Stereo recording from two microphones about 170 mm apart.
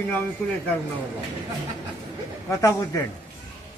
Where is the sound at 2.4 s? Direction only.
15° left (ahead or behind).